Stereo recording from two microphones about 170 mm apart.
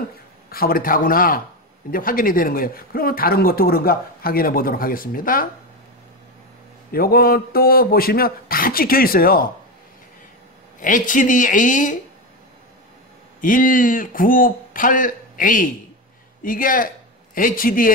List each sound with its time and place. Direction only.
0.5 s speech: 60° left (ahead or behind)
6.9 s speech: 60° left (ahead or behind)
10.8 s a man's voice: 50° left (ahead or behind)
13.4 s a man's voice: 50° left (ahead or behind)